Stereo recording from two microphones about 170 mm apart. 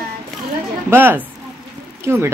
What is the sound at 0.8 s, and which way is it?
Speech, 10° right (ahead or behind).